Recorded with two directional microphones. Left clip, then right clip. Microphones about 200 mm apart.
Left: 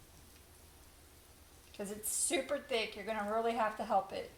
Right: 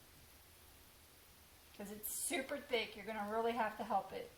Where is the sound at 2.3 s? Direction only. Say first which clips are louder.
Left 4 dB; 25° left (ahead or behind).